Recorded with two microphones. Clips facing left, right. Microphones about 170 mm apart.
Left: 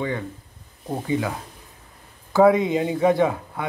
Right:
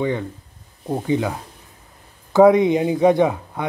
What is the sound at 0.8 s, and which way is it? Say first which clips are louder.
Speech: right 4 dB; 20° right (ahead or behind).